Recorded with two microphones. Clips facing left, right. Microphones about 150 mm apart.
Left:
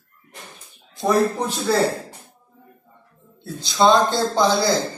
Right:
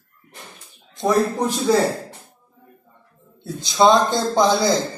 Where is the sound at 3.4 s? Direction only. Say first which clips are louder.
Right 2 dB; 20° right (ahead or behind).